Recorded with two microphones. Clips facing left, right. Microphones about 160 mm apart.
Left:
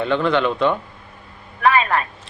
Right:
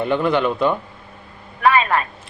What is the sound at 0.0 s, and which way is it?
Mantra, 10° right (ahead or behind).